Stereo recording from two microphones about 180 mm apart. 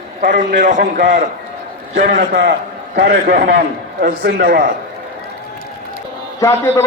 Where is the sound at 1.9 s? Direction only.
65° right (ahead or behind).